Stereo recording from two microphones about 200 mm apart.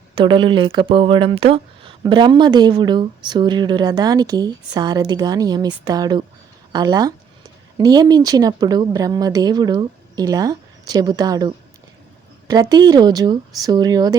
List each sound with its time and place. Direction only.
0.2 s speech: 25° right (ahead or behind)